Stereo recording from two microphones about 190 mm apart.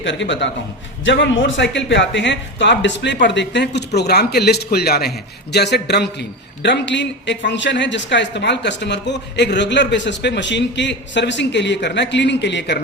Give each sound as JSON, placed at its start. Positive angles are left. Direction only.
{"t": 0.0, "sound": "speech", "side_deg": 70}